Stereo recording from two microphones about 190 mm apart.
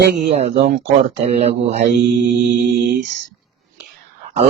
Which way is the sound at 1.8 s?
65° right (ahead or behind).